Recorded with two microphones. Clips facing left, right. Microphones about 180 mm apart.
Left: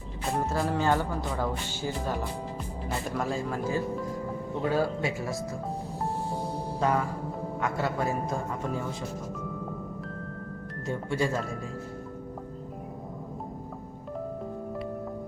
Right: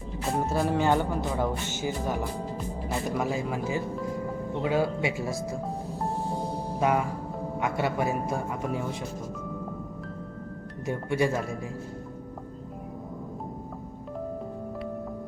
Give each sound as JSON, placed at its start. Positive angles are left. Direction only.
{"t": 0.3, "sound": "speech", "side_deg": -5}
{"t": 2.9, "sound": "speech", "side_deg": -5}
{"t": 6.7, "sound": "music", "side_deg": -15}
{"t": 7.6, "sound": "speech", "side_deg": -15}
{"t": 10.8, "sound": "speech", "side_deg": -15}